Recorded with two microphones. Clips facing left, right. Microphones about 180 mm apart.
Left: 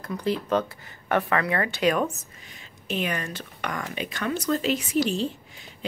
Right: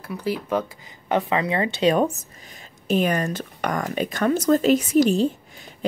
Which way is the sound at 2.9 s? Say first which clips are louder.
Right 8 dB; 40° right (ahead or behind).